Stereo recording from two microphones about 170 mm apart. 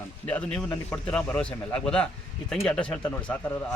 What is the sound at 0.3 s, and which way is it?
Speech, 10° left (ahead or behind).